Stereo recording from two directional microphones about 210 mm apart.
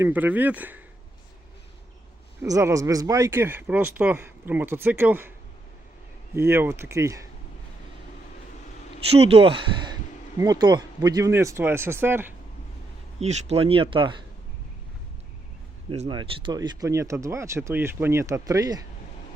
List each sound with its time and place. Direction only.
0.0 s speech: 10° right (ahead or behind)
2.4 s speech: 15° right (ahead or behind)
6.3 s speech: 10° right (ahead or behind)
9.1 s speech: 30° right (ahead or behind); by 12.3 s 10° right (ahead or behind)
13.1 s speech: 30° right (ahead or behind)
15.9 s speech: 25° right (ahead or behind)